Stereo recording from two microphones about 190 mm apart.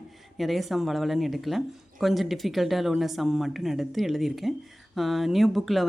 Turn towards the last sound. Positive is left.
turn(degrees=0)  # may be behind; listen again after turning